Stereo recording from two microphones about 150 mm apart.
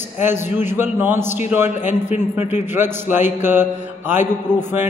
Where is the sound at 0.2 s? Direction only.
15° right (ahead or behind).